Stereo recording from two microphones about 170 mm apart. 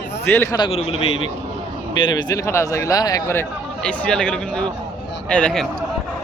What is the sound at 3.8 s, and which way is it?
Speech, 5° left (ahead or behind).